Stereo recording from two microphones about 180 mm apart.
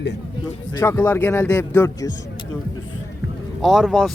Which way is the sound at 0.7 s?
15° left (ahead or behind).